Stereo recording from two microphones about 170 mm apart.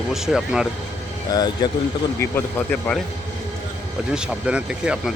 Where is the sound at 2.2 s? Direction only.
15° left (ahead or behind).